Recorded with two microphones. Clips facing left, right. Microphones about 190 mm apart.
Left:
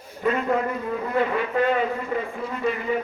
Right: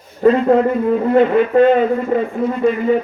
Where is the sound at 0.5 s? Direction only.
30° right (ahead or behind).